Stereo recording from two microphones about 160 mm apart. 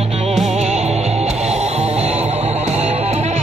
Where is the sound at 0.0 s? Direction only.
40° right (ahead or behind).